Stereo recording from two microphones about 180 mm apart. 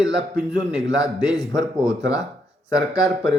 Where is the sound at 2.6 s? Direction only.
15° left (ahead or behind).